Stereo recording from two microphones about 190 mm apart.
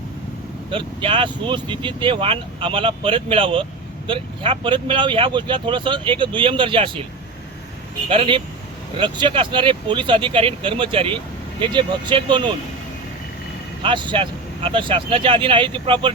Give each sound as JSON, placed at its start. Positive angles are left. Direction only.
{"t": 0.7, "sound": "speech", "side_deg": -25}
{"t": 8.1, "sound": "speech", "side_deg": -30}
{"t": 13.8, "sound": "speech", "side_deg": -25}